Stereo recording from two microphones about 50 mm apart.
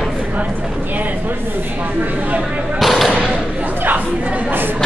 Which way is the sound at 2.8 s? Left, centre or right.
Centre.